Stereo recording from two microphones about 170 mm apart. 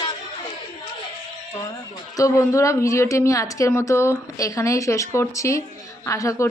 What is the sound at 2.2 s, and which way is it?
A woman's voice, 20° left (ahead or behind).